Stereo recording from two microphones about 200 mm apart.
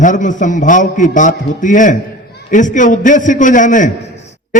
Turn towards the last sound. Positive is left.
turn(degrees=40)  # may be behind; listen again after turning